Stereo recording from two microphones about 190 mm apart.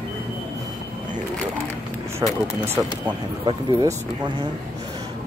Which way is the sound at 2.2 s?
20° right (ahead or behind).